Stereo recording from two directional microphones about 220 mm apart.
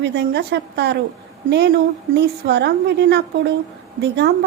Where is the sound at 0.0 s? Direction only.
50° right (ahead or behind).